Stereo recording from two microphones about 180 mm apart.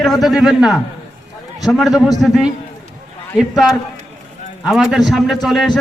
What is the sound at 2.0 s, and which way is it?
Speech, 20° left (ahead or behind).